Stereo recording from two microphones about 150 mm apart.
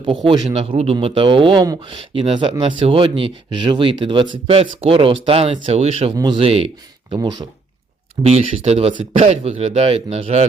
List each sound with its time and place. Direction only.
0.3 s speech: 35° right (ahead or behind)
6.1 s speech: 30° right (ahead or behind)
8.3 s speech: 45° right (ahead or behind)